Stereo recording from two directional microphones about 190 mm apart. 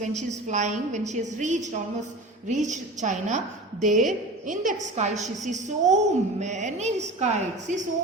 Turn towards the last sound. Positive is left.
turn(degrees=-40)  # may be behind; listen again after turning